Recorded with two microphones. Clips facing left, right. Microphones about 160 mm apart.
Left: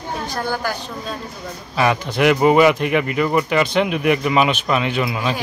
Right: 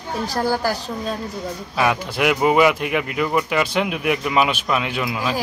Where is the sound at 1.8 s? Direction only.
5° right (ahead or behind).